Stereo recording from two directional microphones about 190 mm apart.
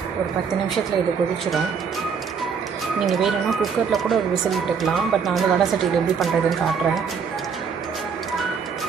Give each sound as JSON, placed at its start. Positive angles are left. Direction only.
{"t": 3.0, "sound": "speech", "side_deg": 0}